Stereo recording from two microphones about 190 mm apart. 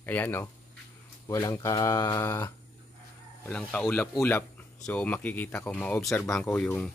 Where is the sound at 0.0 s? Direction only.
10° left (ahead or behind).